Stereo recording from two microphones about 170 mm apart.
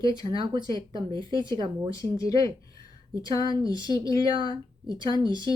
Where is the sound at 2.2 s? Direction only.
20° left (ahead or behind).